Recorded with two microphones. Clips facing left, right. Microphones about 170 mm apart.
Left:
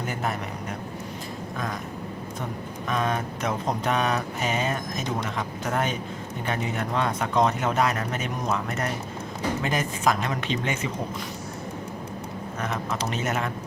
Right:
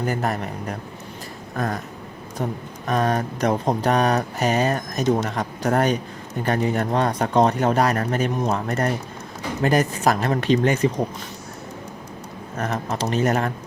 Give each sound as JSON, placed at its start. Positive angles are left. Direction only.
{"t": 0.0, "sound": "speech", "side_deg": -40}
{"t": 12.5, "sound": "speech", "side_deg": -40}